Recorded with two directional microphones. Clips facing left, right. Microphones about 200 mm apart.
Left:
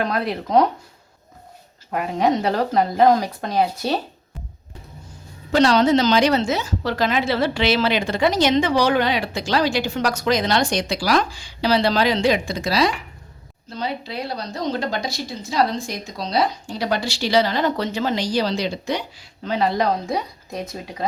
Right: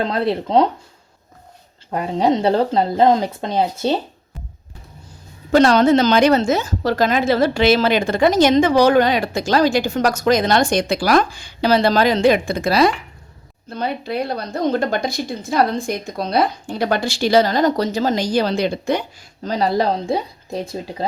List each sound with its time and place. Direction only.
0.0 s speech: 25° right (ahead or behind)
1.9 s speech: 30° right (ahead or behind)
5.5 s speech: 50° right (ahead or behind); by 21.1 s 30° right (ahead or behind)